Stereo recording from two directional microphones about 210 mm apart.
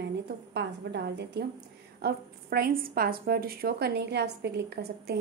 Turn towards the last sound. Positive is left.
turn(degrees=-50)  # may be behind; listen again after turning